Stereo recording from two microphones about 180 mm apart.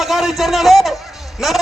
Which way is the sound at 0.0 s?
Centre (ahead or behind).